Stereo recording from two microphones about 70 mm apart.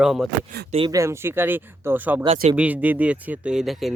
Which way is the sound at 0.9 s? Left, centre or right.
Right.